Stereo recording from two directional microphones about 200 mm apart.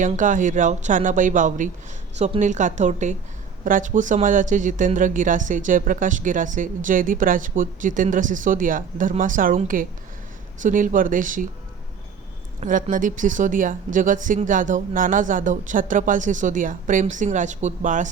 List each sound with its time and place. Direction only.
0.0 s speech: 40° right (ahead or behind)
12.5 s speech: 40° right (ahead or behind)